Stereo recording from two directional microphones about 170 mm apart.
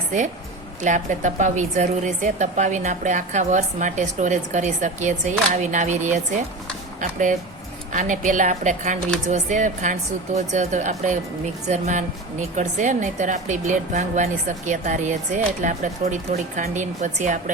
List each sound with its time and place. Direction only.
0.8 s a woman's voice: 45° right (ahead or behind)